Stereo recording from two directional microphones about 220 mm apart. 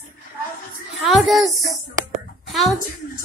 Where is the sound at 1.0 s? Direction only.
Centre (ahead or behind).